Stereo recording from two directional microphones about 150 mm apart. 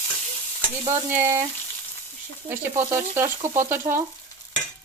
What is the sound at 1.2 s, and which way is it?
Speech, 20° right (ahead or behind).